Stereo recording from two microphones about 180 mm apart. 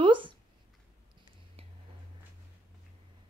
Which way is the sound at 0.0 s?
25° right (ahead or behind).